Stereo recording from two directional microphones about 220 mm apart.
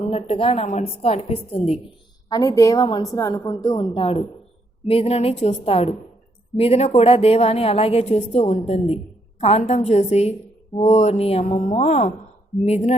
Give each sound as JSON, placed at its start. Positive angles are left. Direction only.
{"t": 0.1, "sound": "a woman's voice", "side_deg": 25}
{"t": 2.3, "sound": "a woman's voice", "side_deg": 15}